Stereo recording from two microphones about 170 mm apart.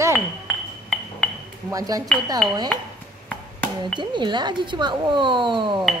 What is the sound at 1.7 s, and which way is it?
Speech, 20° right (ahead or behind).